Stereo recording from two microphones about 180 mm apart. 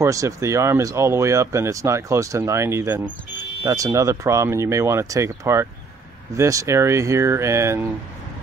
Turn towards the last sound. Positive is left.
turn(degrees=-15)  # may be behind; listen again after turning